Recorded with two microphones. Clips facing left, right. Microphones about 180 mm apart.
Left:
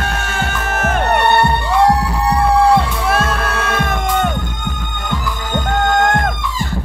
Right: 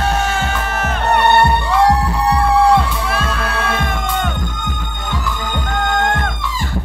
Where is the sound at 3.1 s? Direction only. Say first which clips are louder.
Left 3 dB; 45° left (ahead or behind).